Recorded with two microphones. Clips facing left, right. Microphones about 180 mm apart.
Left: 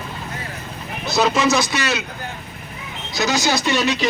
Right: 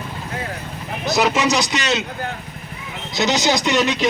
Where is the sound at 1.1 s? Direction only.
15° right (ahead or behind).